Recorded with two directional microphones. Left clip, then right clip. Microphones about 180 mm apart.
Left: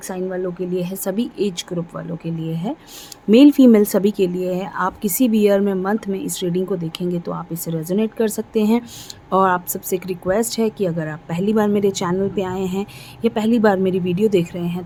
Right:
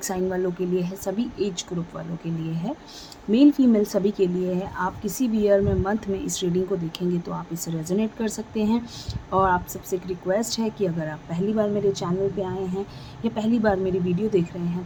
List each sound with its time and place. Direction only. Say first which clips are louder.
0.1 s a woman's voice: left 2 dB; 15° left (ahead or behind)
0.8 s speech: left 4 dB; 30° left (ahead or behind)
3.3 s a woman's voice: left 7 dB; 45° left (ahead or behind)